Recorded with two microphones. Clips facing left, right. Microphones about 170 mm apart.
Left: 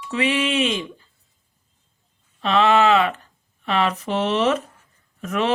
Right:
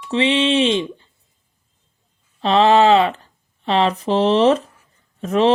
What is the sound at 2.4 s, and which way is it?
Speech, 30° right (ahead or behind).